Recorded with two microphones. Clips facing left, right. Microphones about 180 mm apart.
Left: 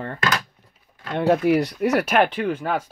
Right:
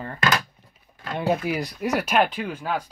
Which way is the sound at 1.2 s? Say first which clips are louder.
Left 6 dB; 65° left (ahead or behind).